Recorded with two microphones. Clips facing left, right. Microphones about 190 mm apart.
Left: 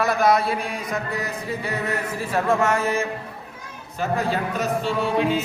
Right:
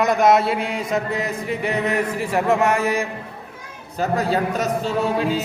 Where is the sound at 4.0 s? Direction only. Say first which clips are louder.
Right 3 dB; 40° right (ahead or behind).